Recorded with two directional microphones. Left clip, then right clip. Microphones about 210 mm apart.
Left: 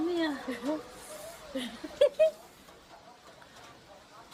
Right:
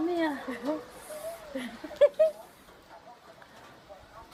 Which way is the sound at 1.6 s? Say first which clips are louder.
Right 3 dB; 25° left (ahead or behind).